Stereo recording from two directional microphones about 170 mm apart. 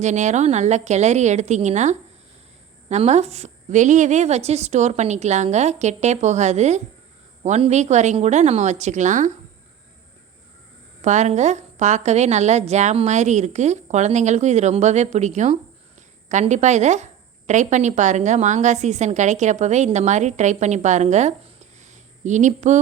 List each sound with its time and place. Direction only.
0.0 s a woman's voice: 45° right (ahead or behind)
11.0 s a woman's voice: 45° right (ahead or behind)